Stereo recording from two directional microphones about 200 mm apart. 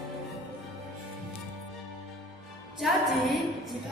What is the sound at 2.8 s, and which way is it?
Music, centre (ahead or behind).